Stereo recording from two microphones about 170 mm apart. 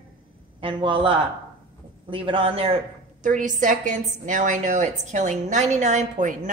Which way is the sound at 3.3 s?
50° right (ahead or behind).